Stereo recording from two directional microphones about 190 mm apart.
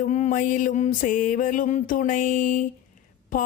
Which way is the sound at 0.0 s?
40° left (ahead or behind).